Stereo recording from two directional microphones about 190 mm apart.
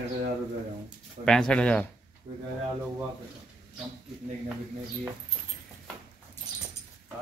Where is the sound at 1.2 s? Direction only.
5° left (ahead or behind).